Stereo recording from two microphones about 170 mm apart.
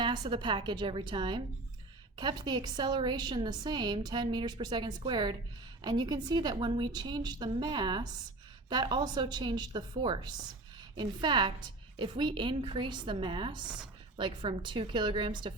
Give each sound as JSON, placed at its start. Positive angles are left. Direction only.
{"t": 0.0, "sound": "a woman's voice", "side_deg": -30}